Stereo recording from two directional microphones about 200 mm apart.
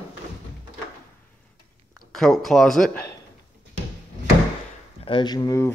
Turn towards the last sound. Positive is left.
turn(degrees=20)  # may be behind; listen again after turning